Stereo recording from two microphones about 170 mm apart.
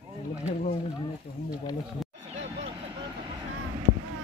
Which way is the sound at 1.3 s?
40° left (ahead or behind).